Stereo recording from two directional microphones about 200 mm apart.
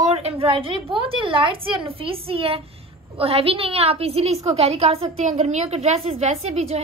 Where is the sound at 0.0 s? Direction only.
30° right (ahead or behind).